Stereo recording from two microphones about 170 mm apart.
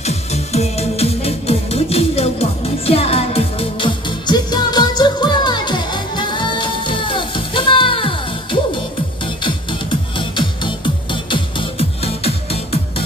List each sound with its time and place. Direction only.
0.0 s music: 40° left (ahead or behind)
12.0 s music: 35° left (ahead or behind)